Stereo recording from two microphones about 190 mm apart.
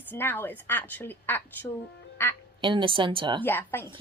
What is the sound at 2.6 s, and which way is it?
Speech, 25° right (ahead or behind).